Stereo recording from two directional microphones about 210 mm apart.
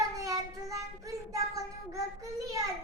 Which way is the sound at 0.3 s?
15° right (ahead or behind).